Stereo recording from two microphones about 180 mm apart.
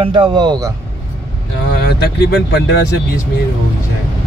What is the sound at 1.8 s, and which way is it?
Speech, 65° left (ahead or behind).